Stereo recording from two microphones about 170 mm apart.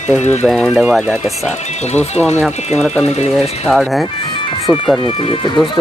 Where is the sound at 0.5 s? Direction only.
Centre (ahead or behind).